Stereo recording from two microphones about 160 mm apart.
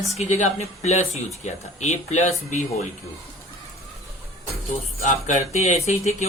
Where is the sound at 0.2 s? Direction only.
45° left (ahead or behind).